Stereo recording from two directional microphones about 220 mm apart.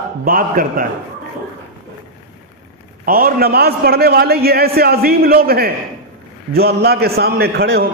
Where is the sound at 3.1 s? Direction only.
40° right (ahead or behind).